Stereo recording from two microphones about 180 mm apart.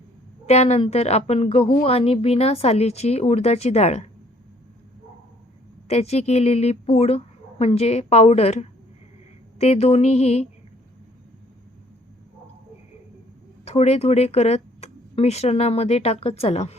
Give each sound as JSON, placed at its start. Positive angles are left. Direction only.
{"t": 0.4, "sound": "a woman's voice", "side_deg": 35}
{"t": 5.9, "sound": "a woman's voice", "side_deg": 35}
{"t": 13.7, "sound": "speech", "side_deg": 35}